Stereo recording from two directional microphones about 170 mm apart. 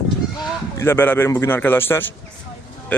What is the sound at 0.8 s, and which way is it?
A man's voice, 15° left (ahead or behind).